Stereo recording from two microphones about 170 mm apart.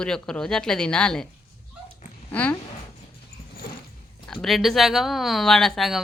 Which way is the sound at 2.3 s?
10° left (ahead or behind).